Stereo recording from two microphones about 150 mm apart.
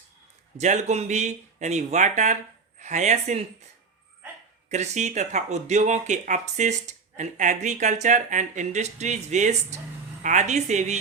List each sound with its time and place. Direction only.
0.5 s speech: 50° right (ahead or behind)
4.7 s speech: 50° right (ahead or behind)